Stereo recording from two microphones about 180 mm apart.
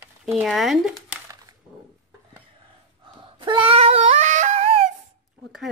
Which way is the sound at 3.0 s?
30° right (ahead or behind).